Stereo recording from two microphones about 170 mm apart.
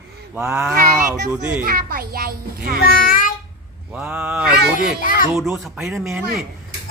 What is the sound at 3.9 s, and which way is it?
Speech, 10° right (ahead or behind).